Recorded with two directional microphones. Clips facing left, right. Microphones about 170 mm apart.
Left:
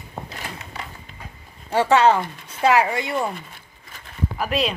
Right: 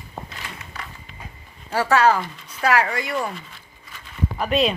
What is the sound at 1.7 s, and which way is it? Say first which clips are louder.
Speech: left 2 dB; 20° left (ahead or behind).